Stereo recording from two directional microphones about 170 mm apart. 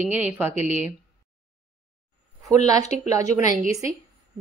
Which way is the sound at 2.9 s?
40° left (ahead or behind).